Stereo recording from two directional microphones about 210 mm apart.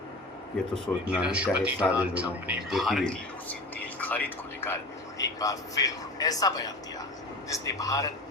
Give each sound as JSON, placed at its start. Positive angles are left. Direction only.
{"t": 0.7, "sound": "a man's voice", "side_deg": -5}